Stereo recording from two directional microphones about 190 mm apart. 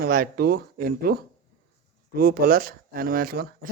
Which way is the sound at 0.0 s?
50° right (ahead or behind).